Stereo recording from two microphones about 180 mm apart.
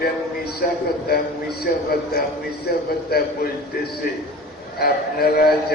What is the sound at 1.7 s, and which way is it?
Speech, 55° left (ahead or behind).